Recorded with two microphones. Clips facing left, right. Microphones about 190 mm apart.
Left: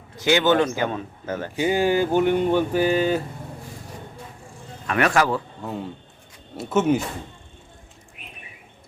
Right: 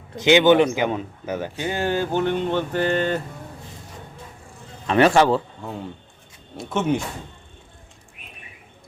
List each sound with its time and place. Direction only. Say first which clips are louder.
0.2 s speech: right 4 dB; 20° right (ahead or behind)
1.5 s speech: left 6 dB; 15° left (ahead or behind)
4.9 s a man's voice: right 5 dB; 30° right (ahead or behind)
5.6 s speech: left 2 dB; centre (ahead or behind)